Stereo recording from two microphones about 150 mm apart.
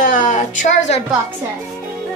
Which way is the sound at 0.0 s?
55° left (ahead or behind).